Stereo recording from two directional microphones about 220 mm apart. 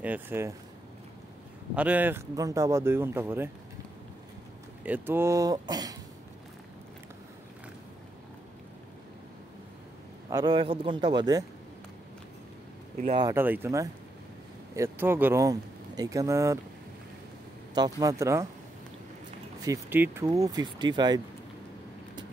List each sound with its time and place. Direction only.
0.0 s speech: 10° right (ahead or behind)
1.8 s speech: 5° right (ahead or behind)
4.8 s speech: 10° right (ahead or behind)
10.3 s a man's voice: 20° right (ahead or behind)
12.9 s speech: 35° right (ahead or behind)
13.2 s speech: 10° right (ahead or behind)
17.7 s speech: 15° right (ahead or behind)
19.6 s speech: 10° right (ahead or behind)